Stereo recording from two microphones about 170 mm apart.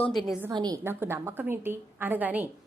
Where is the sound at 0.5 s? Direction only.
25° right (ahead or behind).